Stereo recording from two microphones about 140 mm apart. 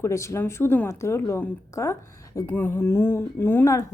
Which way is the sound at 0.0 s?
20° left (ahead or behind).